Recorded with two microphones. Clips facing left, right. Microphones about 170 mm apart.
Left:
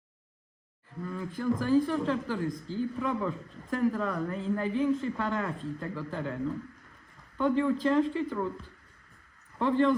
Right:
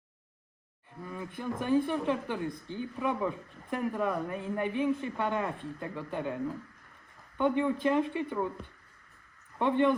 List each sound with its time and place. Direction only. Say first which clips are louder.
1.0 s speech: left 6 dB; 15° right (ahead or behind)
9.6 s speech: left 1 dB; 20° right (ahead or behind)